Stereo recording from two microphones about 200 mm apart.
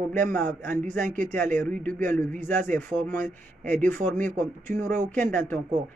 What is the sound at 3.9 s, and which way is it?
Speech, 40° right (ahead or behind).